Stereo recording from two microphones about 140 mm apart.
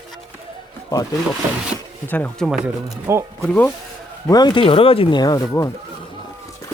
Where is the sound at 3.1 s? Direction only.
20° right (ahead or behind).